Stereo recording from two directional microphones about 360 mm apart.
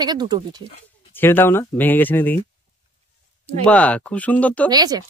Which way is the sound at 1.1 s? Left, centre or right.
Centre.